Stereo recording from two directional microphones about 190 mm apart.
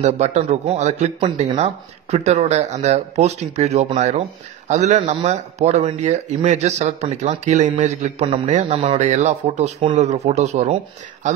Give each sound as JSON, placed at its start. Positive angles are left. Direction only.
{"t": 0.0, "sound": "speech", "side_deg": -40}